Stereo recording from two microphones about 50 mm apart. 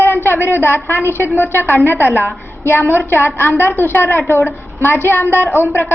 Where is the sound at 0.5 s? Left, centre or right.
Left.